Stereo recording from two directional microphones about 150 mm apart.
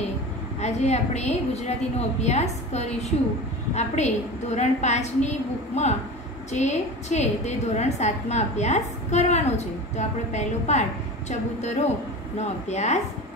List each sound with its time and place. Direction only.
0.6 s a woman's voice: 50° left (ahead or behind)